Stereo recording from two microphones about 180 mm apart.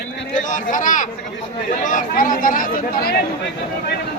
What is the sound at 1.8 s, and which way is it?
Chatter, 45° left (ahead or behind).